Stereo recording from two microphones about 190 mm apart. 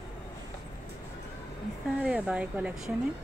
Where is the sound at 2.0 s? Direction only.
5° right (ahead or behind).